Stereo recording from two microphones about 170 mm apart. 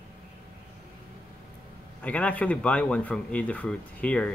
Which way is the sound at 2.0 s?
10° left (ahead or behind).